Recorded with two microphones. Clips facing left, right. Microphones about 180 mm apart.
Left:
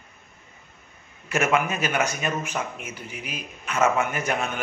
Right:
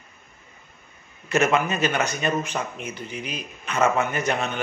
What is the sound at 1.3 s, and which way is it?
Speech, 10° left (ahead or behind).